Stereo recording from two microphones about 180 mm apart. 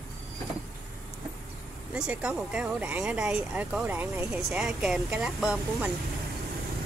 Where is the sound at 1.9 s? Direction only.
5° right (ahead or behind).